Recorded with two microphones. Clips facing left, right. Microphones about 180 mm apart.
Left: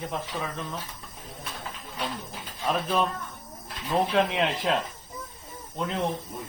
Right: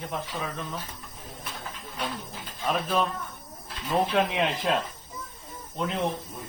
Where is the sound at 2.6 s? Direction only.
Centre (ahead or behind).